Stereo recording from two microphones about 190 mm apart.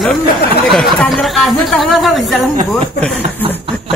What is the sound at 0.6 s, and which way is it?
Speech, centre (ahead or behind).